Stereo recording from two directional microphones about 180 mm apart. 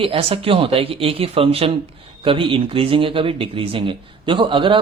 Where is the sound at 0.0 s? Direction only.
30° right (ahead or behind).